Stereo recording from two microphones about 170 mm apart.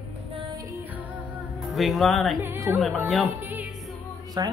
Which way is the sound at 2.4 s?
15° right (ahead or behind).